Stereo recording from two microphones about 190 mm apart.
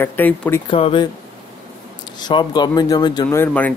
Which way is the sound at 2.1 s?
20° left (ahead or behind).